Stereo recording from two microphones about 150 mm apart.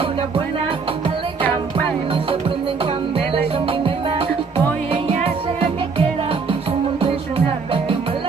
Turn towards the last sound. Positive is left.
turn(degrees=-35)  # may be behind; listen again after turning